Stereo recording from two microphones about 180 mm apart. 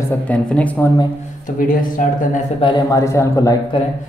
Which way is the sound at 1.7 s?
50° left (ahead or behind).